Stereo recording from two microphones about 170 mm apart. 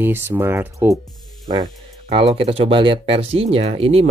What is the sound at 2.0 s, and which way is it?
Speech, 35° right (ahead or behind).